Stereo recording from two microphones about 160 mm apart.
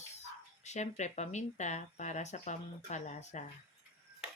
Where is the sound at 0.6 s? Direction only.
45° left (ahead or behind).